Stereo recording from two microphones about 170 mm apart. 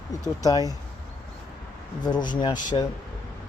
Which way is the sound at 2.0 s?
25° left (ahead or behind).